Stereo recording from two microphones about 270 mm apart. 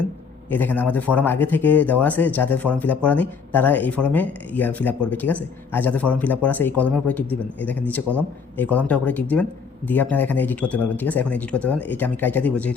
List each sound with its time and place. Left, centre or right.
0.5 s speech: centre